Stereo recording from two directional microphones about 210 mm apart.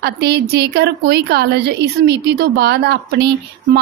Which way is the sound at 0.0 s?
50° right (ahead or behind).